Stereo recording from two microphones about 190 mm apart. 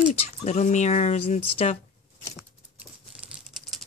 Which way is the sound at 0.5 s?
35° left (ahead or behind).